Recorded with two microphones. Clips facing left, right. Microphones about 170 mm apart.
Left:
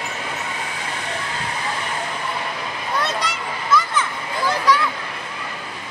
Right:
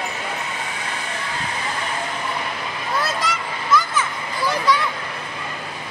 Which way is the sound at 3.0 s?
Centre (ahead or behind).